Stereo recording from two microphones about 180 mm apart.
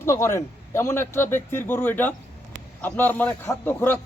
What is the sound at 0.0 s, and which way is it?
A man's voice, 15° left (ahead or behind).